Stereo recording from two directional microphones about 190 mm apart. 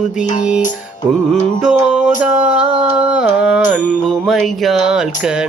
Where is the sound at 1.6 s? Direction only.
5° right (ahead or behind).